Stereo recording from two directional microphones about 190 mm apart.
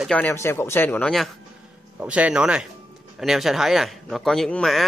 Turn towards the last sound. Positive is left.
turn(degrees=0)  # may be behind; listen again after turning